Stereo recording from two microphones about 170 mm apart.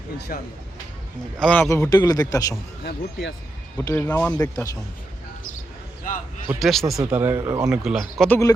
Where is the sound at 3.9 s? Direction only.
15° left (ahead or behind).